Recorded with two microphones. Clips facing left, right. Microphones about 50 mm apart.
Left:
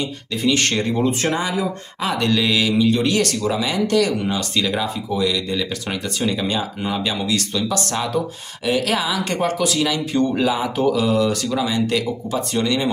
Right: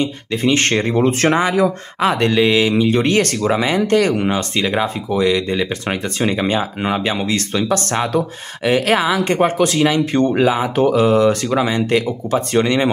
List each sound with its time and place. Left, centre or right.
0.0 s speech: right
2.0 s speech: right